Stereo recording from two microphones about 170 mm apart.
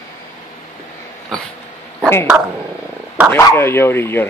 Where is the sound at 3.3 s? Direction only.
15° left (ahead or behind).